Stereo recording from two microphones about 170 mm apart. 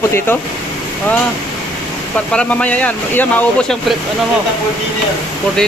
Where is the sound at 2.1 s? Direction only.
5° left (ahead or behind).